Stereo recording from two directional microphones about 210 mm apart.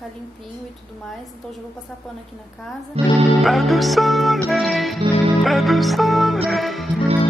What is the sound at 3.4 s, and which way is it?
Music, centre (ahead or behind).